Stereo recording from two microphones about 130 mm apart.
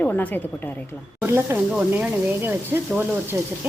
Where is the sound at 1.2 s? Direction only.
20° right (ahead or behind).